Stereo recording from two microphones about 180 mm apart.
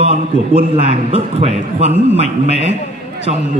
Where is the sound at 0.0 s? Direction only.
35° right (ahead or behind).